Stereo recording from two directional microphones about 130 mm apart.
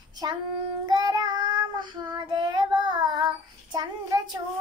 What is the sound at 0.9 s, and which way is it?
Child singing, 30° right (ahead or behind).